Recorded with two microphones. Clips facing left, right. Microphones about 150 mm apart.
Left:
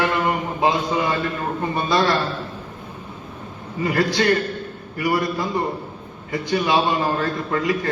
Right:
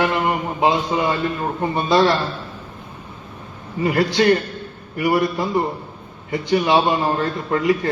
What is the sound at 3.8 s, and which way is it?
A man's voice, 25° right (ahead or behind).